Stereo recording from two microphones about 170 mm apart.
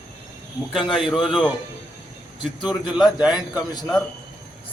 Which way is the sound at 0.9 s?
Centre (ahead or behind).